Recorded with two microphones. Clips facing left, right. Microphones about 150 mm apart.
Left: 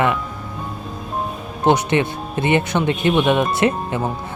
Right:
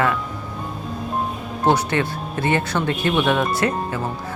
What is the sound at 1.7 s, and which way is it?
Speech, 20° left (ahead or behind).